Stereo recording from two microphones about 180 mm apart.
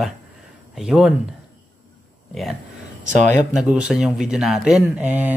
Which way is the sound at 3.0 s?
45° right (ahead or behind).